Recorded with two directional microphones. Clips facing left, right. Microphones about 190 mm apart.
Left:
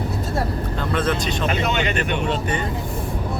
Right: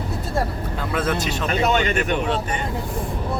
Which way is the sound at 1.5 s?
40° right (ahead or behind).